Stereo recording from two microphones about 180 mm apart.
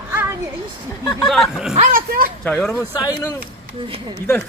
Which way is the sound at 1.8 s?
50° right (ahead or behind).